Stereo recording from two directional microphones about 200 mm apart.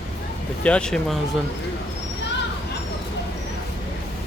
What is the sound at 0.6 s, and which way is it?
Speech, 5° left (ahead or behind).